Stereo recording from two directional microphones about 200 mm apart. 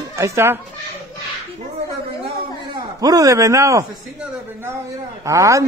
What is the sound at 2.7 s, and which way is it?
A man's voice, 20° right (ahead or behind).